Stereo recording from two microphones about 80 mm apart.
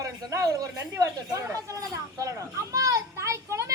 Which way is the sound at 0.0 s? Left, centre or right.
Right.